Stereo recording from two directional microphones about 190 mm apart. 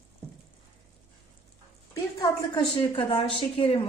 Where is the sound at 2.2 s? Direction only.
25° left (ahead or behind).